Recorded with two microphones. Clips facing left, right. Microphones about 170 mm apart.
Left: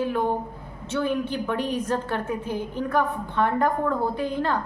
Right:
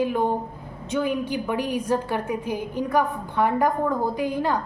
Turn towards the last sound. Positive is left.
turn(degrees=-10)  # may be behind; listen again after turning